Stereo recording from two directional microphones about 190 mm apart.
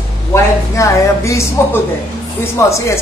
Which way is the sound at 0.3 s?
15° left (ahead or behind).